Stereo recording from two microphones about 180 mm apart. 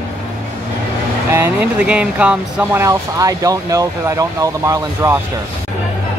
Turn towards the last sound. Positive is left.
turn(degrees=-15)  # may be behind; listen again after turning